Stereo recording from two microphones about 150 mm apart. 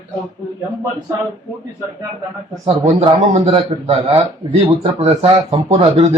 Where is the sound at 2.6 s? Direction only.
45° right (ahead or behind).